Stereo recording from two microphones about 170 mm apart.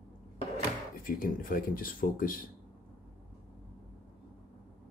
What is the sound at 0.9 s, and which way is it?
Speech, 55° left (ahead or behind).